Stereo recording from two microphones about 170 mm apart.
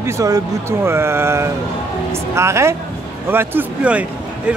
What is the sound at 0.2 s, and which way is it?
Speech, 20° right (ahead or behind).